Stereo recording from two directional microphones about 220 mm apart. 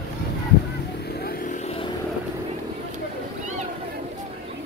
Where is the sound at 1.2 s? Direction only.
40° left (ahead or behind).